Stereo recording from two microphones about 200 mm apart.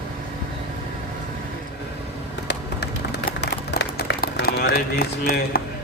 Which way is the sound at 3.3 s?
55° left (ahead or behind).